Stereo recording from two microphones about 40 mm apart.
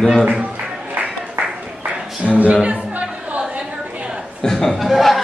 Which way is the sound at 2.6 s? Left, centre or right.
Right.